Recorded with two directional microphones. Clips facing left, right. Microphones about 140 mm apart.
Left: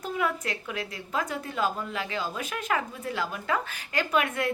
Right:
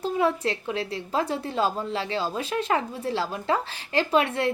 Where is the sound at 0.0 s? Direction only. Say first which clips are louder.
Right 6 dB; 30° right (ahead or behind).